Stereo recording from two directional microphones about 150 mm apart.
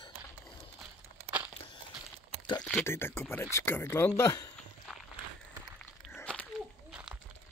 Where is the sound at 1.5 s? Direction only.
35° left (ahead or behind).